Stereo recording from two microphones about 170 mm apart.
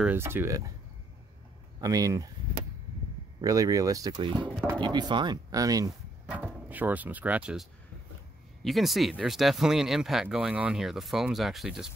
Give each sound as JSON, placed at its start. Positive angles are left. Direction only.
{"t": 0.0, "sound": "speech", "side_deg": -10}
{"t": 1.8, "sound": "speech", "side_deg": -20}
{"t": 3.3, "sound": "speech", "side_deg": -20}
{"t": 6.2, "sound": "speech", "side_deg": -10}
{"t": 8.6, "sound": "speech", "side_deg": 0}